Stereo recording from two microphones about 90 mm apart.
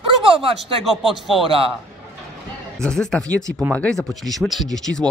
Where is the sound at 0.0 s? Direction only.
75° right (ahead or behind).